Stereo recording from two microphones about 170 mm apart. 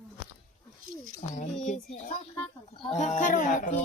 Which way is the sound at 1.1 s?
50° left (ahead or behind).